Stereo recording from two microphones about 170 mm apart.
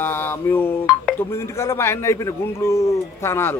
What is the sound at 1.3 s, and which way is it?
Speech, 15° left (ahead or behind).